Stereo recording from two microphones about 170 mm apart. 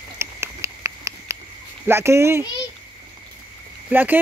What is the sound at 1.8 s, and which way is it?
Speech, 15° right (ahead or behind).